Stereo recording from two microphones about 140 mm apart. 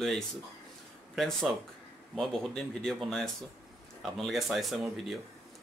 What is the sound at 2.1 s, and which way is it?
Speech, 5° left (ahead or behind).